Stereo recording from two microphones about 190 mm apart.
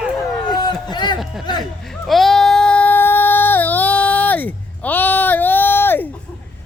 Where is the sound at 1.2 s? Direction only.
Centre (ahead or behind).